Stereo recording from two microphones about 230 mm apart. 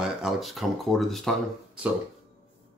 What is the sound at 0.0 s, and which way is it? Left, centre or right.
Speech, centre.